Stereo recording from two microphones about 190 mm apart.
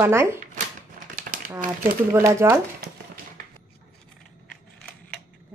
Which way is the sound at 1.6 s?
15° right (ahead or behind).